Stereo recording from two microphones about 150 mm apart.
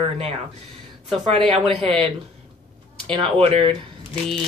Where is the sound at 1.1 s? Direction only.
40° right (ahead or behind).